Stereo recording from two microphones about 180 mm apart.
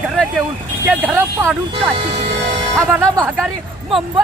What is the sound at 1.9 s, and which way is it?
Speech, 35° right (ahead or behind).